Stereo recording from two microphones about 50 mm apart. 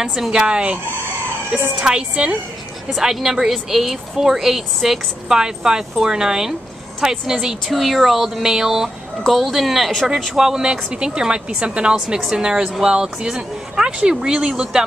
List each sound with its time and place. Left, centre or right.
0.0 s speech: centre
1.8 s speech: centre
9.2 s speech: centre